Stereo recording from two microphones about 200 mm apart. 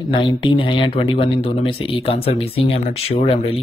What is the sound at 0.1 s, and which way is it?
Speech, 25° left (ahead or behind).